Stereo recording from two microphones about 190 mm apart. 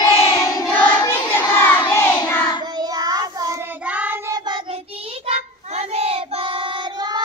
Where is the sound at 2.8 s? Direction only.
20° right (ahead or behind).